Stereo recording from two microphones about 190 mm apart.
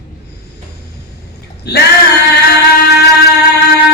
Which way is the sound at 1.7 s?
60° left (ahead or behind).